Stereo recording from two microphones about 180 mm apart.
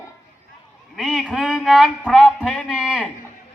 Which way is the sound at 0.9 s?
Centre (ahead or behind).